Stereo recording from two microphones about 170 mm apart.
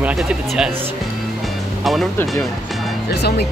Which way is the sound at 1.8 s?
Centre (ahead or behind).